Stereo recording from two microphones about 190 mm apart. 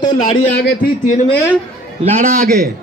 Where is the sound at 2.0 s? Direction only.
40° right (ahead or behind).